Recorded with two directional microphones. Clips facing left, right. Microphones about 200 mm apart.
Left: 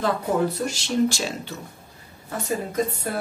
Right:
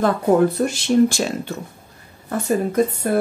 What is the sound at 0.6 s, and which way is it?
Speech, 55° right (ahead or behind).